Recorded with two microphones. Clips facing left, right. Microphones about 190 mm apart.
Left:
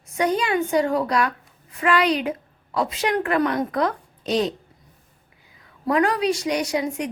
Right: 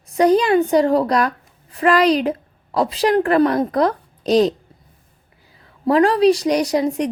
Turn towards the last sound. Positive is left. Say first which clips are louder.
# right 6 dB
turn(degrees=-35)  # may be behind; listen again after turning